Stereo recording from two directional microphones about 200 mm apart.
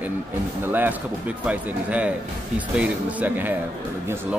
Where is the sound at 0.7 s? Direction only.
10° right (ahead or behind).